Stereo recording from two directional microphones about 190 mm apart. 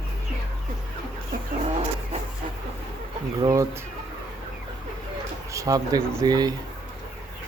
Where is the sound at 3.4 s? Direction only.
15° right (ahead or behind).